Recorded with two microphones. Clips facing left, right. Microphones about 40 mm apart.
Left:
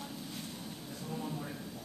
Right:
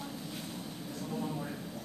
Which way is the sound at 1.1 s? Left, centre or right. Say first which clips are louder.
Right 3 dB; centre.